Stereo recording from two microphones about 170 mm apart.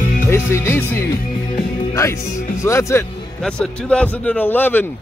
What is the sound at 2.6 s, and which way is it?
Speech, 15° left (ahead or behind).